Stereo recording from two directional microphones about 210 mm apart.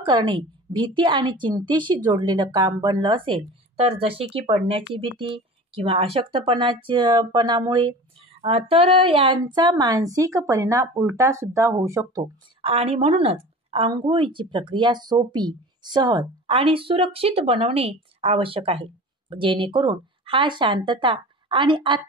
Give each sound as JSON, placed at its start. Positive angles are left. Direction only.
{"t": 0.0, "sound": "a woman's voice", "side_deg": -20}
{"t": 12.6, "sound": "speech", "side_deg": -30}